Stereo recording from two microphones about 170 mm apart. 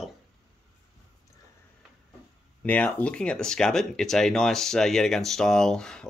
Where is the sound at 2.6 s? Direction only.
10° left (ahead or behind).